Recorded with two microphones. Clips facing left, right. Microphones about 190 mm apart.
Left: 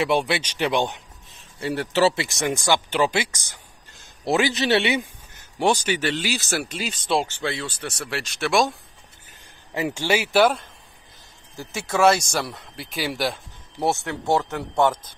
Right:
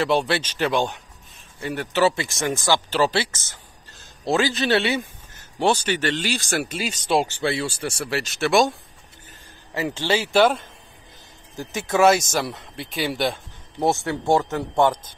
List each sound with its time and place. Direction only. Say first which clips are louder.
0.0 s a man's voice: right 1 dB; 10° left (ahead or behind); by 2.2 s 25° left (ahead or behind)
2.4 s a man's voice: even; 15° left (ahead or behind); by 8.7 s centre (ahead or behind)
9.8 s speech: even; 15° left (ahead or behind)
11.9 s speech: right 1 dB; centre (ahead or behind)
14.2 s a man's voice: right 2 dB; 20° right (ahead or behind)
14.5 s speech: right 1 dB; centre (ahead or behind)